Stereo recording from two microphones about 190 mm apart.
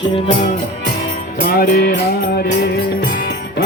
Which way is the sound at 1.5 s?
50° left (ahead or behind).